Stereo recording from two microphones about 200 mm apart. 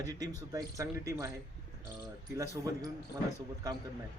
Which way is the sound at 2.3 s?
15° right (ahead or behind).